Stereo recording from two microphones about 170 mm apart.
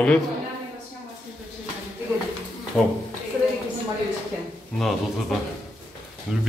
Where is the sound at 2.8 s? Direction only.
5° left (ahead or behind).